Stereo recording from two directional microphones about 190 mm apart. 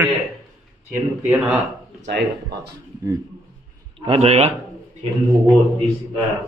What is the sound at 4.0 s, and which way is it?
Speech, 30° right (ahead or behind).